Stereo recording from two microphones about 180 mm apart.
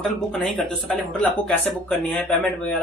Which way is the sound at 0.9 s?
Centre (ahead or behind).